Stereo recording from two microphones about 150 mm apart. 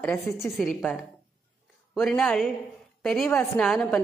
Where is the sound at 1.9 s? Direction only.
Centre (ahead or behind).